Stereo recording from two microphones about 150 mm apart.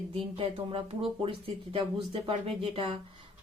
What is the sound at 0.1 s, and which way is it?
Speech, 40° right (ahead or behind).